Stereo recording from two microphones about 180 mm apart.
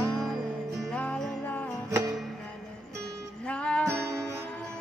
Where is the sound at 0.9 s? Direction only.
10° left (ahead or behind).